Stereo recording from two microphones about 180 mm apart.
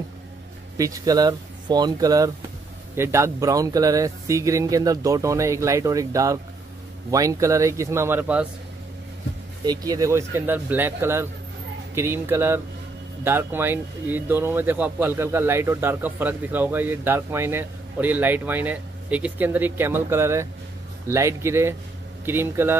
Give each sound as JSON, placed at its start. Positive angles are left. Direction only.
{"t": 0.7, "sound": "speech", "side_deg": -20}
{"t": 9.7, "sound": "speech", "side_deg": -20}